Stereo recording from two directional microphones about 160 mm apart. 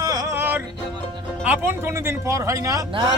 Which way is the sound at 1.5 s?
15° right (ahead or behind).